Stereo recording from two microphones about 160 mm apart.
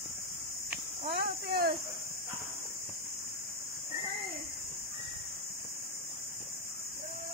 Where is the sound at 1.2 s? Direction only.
75° right (ahead or behind).